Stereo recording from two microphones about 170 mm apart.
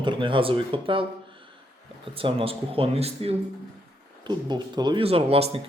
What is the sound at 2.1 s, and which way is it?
Speech, 35° right (ahead or behind).